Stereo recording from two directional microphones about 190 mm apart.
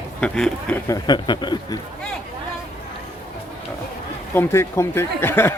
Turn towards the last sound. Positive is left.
turn(degrees=10)  # may be behind; listen again after turning